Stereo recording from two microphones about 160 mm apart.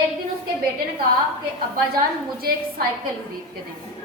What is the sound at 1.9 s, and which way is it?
Speech, 70° right (ahead or behind).